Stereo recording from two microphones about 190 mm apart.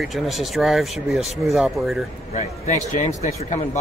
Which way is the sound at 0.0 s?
Centre (ahead or behind).